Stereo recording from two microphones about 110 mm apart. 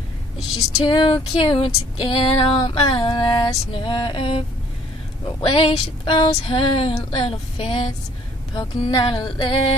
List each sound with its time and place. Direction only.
0.6 s speech: 30° left (ahead or behind)
0.9 s female singing: 45° left (ahead or behind)
8.5 s music: 40° left (ahead or behind)